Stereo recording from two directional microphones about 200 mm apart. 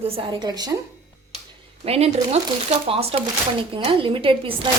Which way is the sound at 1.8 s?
30° right (ahead or behind).